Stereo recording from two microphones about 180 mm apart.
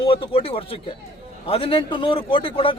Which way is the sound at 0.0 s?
30° left (ahead or behind).